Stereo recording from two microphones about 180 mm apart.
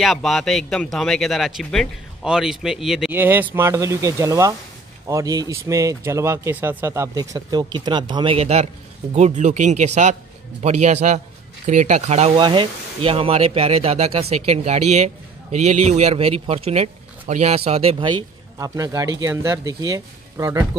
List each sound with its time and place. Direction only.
0.0 s a man's voice: centre (ahead or behind); by 12.4 s 35° right (ahead or behind)
12.4 s speech: 25° right (ahead or behind)